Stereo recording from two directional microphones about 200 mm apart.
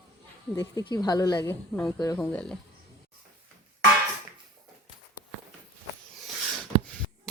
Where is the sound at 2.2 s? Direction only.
5° left (ahead or behind).